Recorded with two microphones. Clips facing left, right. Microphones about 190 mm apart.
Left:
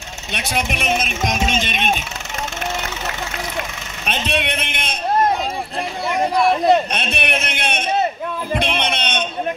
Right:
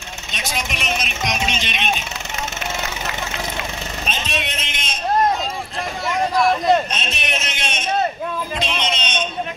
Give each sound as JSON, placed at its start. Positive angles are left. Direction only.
{"t": 0.3, "sound": "speech", "side_deg": 60}
{"t": 4.0, "sound": "a man's voice", "side_deg": 60}
{"t": 6.9, "sound": "a sound", "side_deg": 60}
{"t": 8.5, "sound": "bleat", "side_deg": 60}